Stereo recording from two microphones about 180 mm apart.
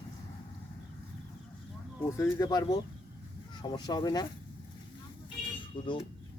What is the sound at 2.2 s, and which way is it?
Speech, 20° left (ahead or behind).